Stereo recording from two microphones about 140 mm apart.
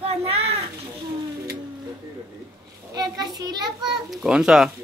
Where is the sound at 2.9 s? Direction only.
30° right (ahead or behind).